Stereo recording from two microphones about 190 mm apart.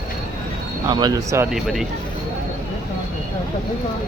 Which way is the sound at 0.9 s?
20° right (ahead or behind).